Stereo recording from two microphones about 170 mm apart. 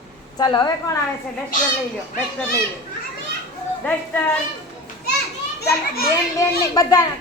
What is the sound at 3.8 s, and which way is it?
Speech, 10° left (ahead or behind).